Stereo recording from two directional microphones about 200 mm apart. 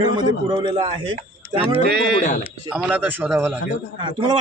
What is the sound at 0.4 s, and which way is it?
Speech, 20° right (ahead or behind).